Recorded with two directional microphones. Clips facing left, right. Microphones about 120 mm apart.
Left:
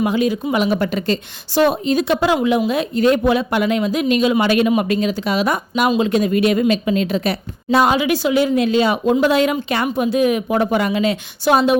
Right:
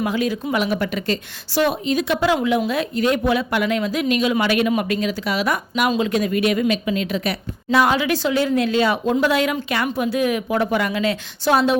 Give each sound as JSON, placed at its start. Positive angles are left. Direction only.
{"t": 0.0, "sound": "a woman's voice", "side_deg": 20}
{"t": 2.2, "sound": "a woman's voice", "side_deg": 20}